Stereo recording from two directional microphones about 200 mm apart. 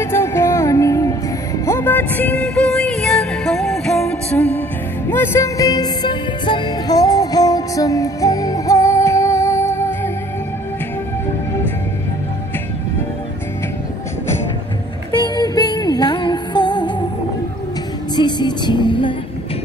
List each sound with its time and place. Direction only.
0.0 s music: 15° left (ahead or behind)
15.1 s music: 20° left (ahead or behind)
18.1 s music: 20° left (ahead or behind)